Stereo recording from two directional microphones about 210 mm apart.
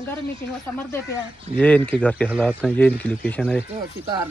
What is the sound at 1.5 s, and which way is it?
Speech, 5° left (ahead or behind).